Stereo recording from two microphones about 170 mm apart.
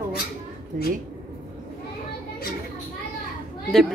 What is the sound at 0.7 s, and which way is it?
Speech, 55° right (ahead or behind).